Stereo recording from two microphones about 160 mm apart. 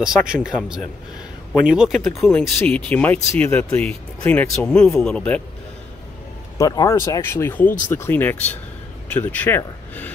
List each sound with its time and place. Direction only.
0.0 s speech: 5° right (ahead or behind)
6.6 s speech: 20° left (ahead or behind)